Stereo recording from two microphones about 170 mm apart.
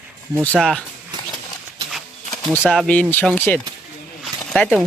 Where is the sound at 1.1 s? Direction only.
25° right (ahead or behind).